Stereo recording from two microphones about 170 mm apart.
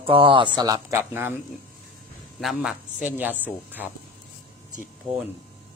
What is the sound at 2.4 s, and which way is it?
Speech, centre (ahead or behind).